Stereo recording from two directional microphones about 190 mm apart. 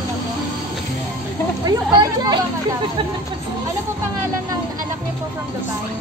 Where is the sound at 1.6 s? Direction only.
20° right (ahead or behind).